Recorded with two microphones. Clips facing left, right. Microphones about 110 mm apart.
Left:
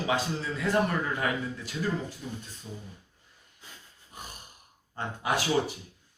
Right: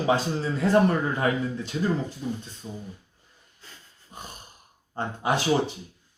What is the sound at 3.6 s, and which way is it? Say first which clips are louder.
Snort: right 1 dB; 15° left (ahead or behind).